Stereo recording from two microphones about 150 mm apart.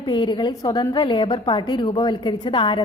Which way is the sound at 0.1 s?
30° left (ahead or behind).